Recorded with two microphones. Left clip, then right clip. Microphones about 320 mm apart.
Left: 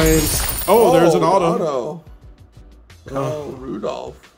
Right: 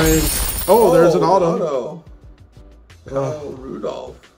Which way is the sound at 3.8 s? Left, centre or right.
Left.